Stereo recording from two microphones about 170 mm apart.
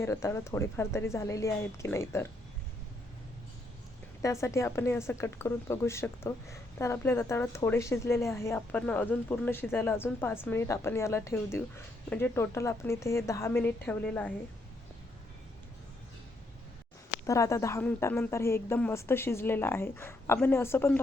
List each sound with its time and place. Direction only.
0.0 s speech: 15° left (ahead or behind)
4.2 s speech: 15° left (ahead or behind)
17.2 s speech: 20° left (ahead or behind)